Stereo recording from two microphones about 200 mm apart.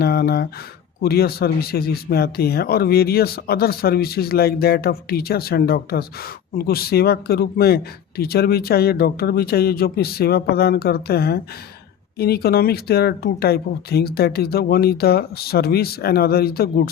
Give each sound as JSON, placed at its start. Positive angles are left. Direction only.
{"t": 0.0, "sound": "speech", "side_deg": 50}